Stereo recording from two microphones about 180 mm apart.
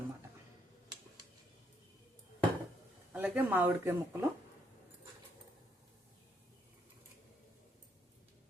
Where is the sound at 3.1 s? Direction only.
10° right (ahead or behind).